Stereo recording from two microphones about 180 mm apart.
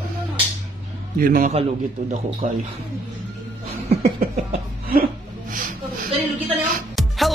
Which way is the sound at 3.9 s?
35° right (ahead or behind).